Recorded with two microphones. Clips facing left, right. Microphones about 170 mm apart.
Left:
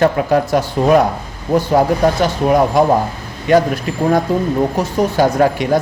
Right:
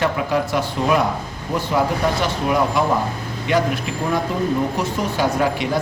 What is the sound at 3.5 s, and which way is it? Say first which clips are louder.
Speech: left 7 dB; 45° left (ahead or behind).